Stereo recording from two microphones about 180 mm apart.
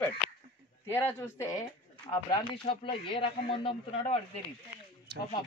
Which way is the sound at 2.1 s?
25° left (ahead or behind).